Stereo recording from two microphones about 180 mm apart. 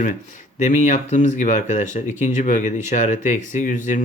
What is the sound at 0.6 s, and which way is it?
Speech, 45° left (ahead or behind).